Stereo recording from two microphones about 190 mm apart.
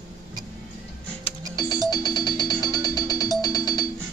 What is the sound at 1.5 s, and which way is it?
Music, 20° left (ahead or behind).